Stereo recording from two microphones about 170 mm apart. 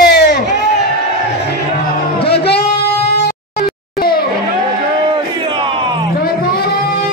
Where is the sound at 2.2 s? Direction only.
70° left (ahead or behind).